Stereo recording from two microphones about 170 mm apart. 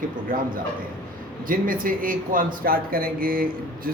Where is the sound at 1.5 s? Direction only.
55° right (ahead or behind).